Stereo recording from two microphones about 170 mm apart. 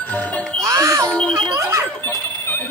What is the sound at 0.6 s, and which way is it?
Music, 20° right (ahead or behind).